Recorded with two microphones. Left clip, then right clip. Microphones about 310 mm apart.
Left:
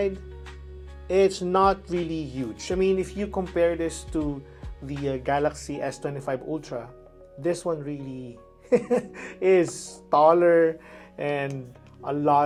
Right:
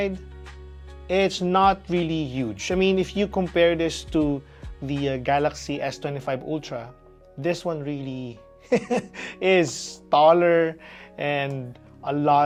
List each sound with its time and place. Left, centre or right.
1.1 s speech: right
10.1 s speech: right